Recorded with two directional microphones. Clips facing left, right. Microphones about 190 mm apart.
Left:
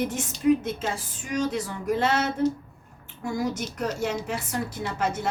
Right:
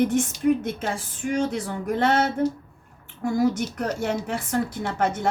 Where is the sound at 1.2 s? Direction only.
55° right (ahead or behind).